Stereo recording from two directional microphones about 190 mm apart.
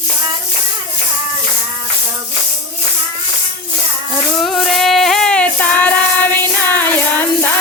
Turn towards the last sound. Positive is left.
turn(degrees=10)  # may be behind; listen again after turning